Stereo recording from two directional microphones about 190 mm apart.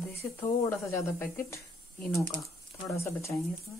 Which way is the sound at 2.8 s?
15° left (ahead or behind).